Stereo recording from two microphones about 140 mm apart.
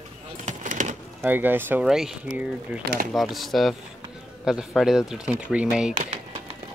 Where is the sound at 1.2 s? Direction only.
15° right (ahead or behind).